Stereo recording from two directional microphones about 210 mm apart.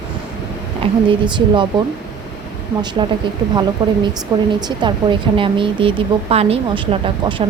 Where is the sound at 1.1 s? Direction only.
20° right (ahead or behind).